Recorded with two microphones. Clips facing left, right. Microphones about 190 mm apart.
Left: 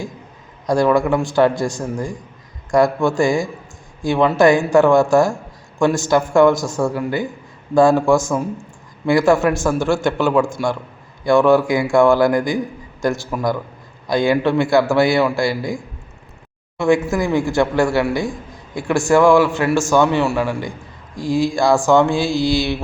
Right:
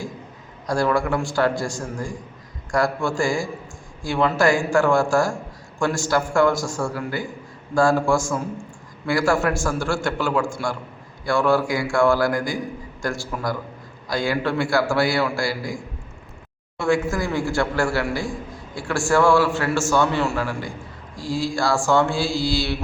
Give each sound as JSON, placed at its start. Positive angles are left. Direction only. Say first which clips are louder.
{"t": 0.7, "sound": "a man's voice", "louder": "left 6 dB", "side_deg": 20}